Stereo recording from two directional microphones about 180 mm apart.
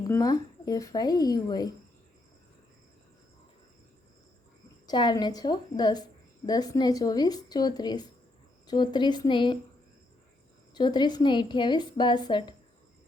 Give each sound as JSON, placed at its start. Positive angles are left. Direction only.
{"t": 0.0, "sound": "a woman's voice", "side_deg": 20}
{"t": 4.9, "sound": "a woman's voice", "side_deg": 25}
{"t": 10.8, "sound": "a woman's voice", "side_deg": 25}